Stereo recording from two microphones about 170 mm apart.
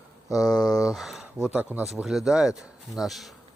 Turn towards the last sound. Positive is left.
turn(degrees=0)  # may be behind; listen again after turning